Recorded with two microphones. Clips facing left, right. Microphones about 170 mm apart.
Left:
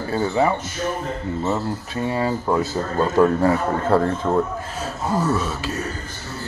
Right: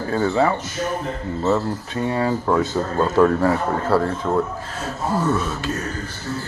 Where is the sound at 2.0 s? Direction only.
15° left (ahead or behind).